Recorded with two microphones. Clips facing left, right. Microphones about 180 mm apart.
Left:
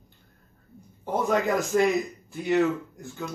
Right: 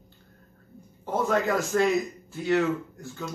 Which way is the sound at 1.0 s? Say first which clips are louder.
Left 1 dB; 15° left (ahead or behind).